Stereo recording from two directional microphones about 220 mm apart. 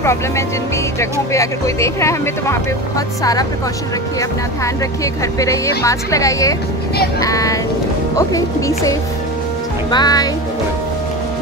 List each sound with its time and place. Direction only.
1.3 s speech: 15° left (ahead or behind)
5.4 s speech: 15° left (ahead or behind)